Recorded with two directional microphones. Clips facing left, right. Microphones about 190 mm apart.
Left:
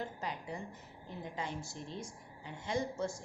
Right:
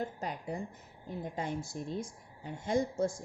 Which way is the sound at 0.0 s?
45° right (ahead or behind).